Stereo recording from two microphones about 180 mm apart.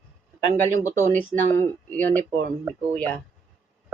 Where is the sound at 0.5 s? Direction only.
15° left (ahead or behind).